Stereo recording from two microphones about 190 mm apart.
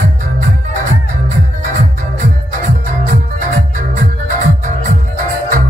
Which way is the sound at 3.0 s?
45° right (ahead or behind).